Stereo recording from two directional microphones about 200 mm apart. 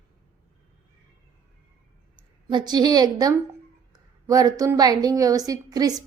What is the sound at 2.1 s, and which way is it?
A woman's voice, 20° right (ahead or behind).